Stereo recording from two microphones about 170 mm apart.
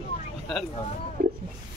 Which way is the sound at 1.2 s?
55° right (ahead or behind).